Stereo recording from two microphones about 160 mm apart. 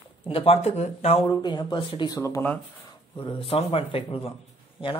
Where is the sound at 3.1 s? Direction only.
30° left (ahead or behind).